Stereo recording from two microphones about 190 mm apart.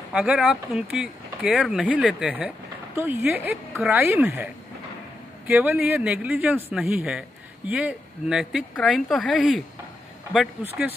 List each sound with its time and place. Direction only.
0.1 s a man's voice: 5° right (ahead or behind)
5.5 s a man's voice: 10° right (ahead or behind)